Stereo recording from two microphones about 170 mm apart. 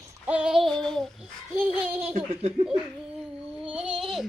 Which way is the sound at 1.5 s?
10° right (ahead or behind).